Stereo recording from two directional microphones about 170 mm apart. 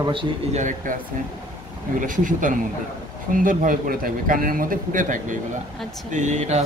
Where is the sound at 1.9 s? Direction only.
50° right (ahead or behind).